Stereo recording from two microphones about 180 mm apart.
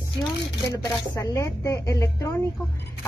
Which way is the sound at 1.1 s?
15° left (ahead or behind).